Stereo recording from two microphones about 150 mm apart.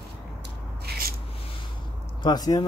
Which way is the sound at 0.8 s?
85° right.